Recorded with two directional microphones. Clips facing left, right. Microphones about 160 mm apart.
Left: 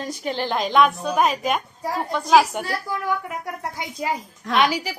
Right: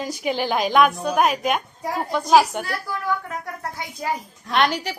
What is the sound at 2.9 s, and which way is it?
Speech, 15° left (ahead or behind).